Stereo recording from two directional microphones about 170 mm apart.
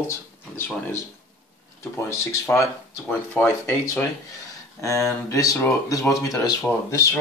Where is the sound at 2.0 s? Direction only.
15° left (ahead or behind).